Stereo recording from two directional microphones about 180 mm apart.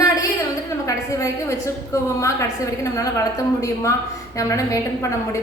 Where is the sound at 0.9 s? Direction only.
15° left (ahead or behind).